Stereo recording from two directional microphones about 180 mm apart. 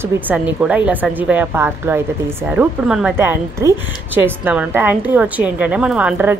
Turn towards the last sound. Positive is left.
turn(degrees=-10)  # may be behind; listen again after turning